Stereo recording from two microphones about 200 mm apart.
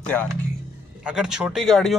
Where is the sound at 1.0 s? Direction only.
5° right (ahead or behind).